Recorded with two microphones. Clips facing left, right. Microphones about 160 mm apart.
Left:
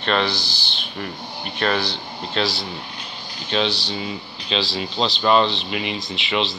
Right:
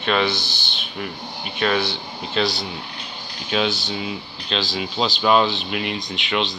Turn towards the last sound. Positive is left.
turn(degrees=0)  # may be behind; listen again after turning